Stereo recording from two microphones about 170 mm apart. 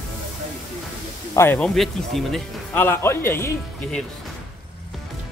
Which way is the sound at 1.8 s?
Centre (ahead or behind).